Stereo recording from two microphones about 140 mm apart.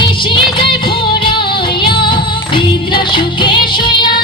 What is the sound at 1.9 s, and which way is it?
Music, 35° left (ahead or behind).